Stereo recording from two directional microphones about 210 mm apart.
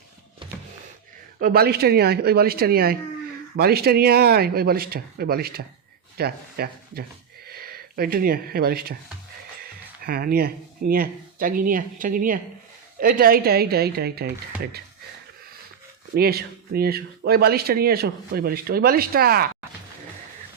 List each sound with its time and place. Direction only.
1.4 s speech: 45° right (ahead or behind)
10.0 s speech: 45° right (ahead or behind)
16.1 s speech: 45° right (ahead or behind)